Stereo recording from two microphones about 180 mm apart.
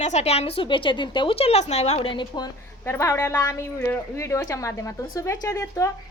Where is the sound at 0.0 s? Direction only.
40° left (ahead or behind).